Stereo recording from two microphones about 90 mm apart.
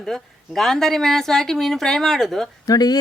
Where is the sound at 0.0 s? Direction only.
5° left (ahead or behind).